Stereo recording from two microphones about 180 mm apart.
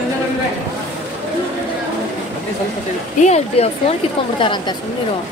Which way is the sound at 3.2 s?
35° left (ahead or behind).